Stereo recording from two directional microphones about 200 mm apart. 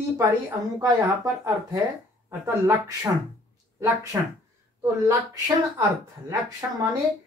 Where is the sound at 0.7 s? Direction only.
15° right (ahead or behind).